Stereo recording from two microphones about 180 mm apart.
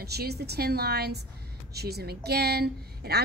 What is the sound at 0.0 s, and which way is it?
A woman's voice, 65° right (ahead or behind).